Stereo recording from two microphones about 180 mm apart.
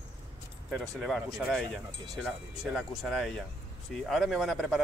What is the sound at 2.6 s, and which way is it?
Speech, centre (ahead or behind).